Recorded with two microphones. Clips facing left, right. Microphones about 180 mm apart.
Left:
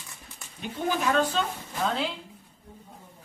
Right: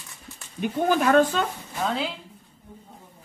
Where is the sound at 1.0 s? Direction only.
55° right (ahead or behind).